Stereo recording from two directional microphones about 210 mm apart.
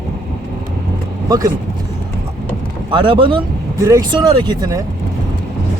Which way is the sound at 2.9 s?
20° right (ahead or behind).